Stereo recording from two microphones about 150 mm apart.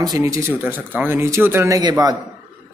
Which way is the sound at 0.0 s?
25° right (ahead or behind).